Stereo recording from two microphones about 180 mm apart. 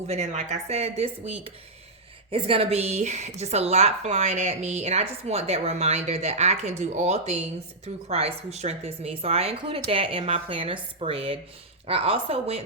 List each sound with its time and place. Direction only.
0.1 s a woman's voice: 40° right (ahead or behind)